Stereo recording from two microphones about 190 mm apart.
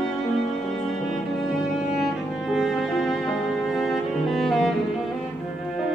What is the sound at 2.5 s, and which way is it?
Music, centre (ahead or behind).